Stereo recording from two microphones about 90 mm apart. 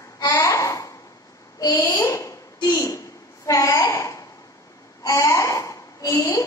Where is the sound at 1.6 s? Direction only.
40° left (ahead or behind).